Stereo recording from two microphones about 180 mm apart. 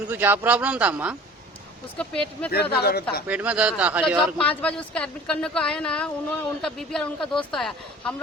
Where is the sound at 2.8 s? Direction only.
60° left (ahead or behind).